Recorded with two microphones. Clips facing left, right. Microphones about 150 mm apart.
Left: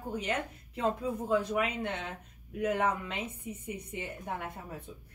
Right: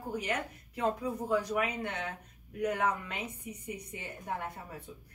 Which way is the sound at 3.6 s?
25° left (ahead or behind).